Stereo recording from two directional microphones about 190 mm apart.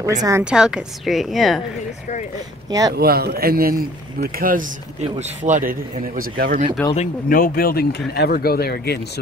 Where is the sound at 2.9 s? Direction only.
55° right (ahead or behind).